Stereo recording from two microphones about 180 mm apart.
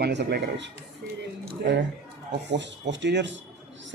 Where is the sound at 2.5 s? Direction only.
80° right.